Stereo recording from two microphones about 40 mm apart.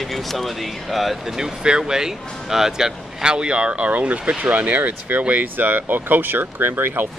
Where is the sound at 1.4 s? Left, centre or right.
Centre.